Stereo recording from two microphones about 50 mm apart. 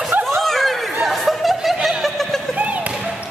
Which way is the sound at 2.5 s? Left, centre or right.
Right.